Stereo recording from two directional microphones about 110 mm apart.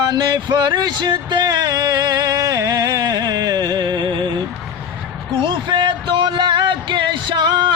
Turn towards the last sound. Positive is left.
turn(degrees=-45)  # may be behind; listen again after turning